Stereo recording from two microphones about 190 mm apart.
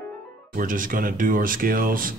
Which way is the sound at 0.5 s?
45° right (ahead or behind).